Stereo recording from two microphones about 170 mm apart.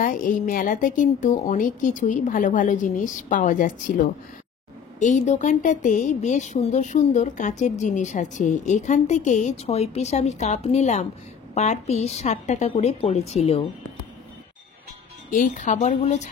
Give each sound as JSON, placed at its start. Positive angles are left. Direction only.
{"t": 0.0, "sound": "a woman's voice", "side_deg": 50}
{"t": 15.3, "sound": "a woman's voice", "side_deg": 50}